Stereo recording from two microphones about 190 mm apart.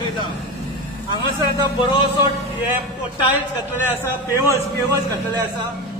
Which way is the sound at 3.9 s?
10° right (ahead or behind).